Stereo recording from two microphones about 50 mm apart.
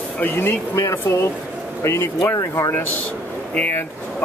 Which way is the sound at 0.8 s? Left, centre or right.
Left.